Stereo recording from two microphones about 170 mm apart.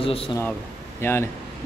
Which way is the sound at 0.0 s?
35° left (ahead or behind).